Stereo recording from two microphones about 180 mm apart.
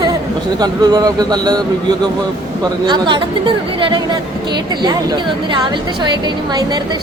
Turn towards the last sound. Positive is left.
turn(degrees=-25)  # may be behind; listen again after turning